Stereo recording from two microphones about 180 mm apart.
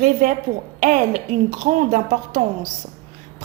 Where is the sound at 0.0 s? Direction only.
50° right (ahead or behind).